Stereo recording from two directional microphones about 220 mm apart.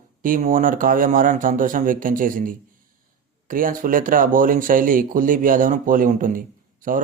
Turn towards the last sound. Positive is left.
turn(degrees=-40)  # may be behind; listen again after turning